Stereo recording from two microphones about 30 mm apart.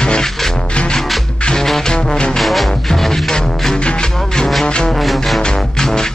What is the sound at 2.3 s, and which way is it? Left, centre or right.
Music, centre.